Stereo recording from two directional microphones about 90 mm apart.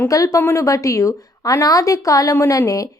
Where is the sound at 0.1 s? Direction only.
35° left (ahead or behind).